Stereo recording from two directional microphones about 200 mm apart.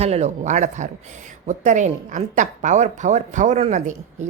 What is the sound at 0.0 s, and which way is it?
A woman's voice, 35° right (ahead or behind).